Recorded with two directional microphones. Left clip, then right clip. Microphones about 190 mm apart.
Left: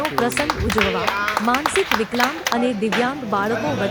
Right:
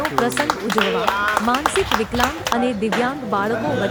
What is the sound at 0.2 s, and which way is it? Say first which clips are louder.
Speech: right 2 dB; centre (ahead or behind).